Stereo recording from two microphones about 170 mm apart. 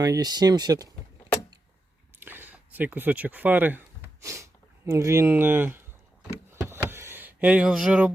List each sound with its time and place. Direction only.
0.0 s speech: 25° right (ahead or behind)
2.1 s a sound: 10° right (ahead or behind)
4.9 s speech: 15° right (ahead or behind)
6.7 s power windows: 15° right (ahead or behind)